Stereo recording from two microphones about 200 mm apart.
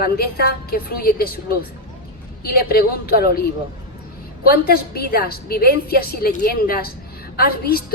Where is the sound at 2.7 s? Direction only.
50° left (ahead or behind).